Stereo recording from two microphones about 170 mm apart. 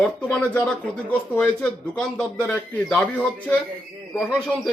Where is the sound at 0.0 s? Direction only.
5° left (ahead or behind).